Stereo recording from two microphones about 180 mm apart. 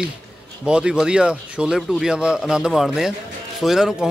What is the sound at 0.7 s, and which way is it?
A man's voice, 5° right (ahead or behind).